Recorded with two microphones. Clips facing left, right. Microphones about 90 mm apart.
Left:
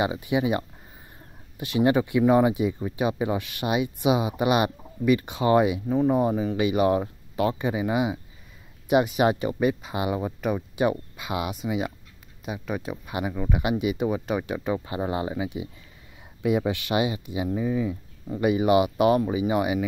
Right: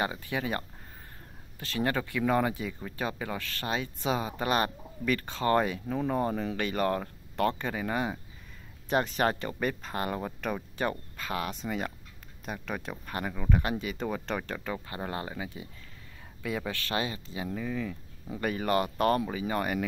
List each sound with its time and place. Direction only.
0.0 s speech: 15° left (ahead or behind)